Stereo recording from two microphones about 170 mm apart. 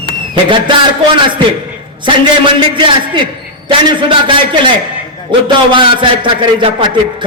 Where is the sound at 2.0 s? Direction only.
30° right (ahead or behind).